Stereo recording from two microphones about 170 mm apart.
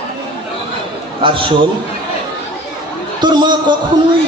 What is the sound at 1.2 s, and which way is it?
Speech, 30° right (ahead or behind).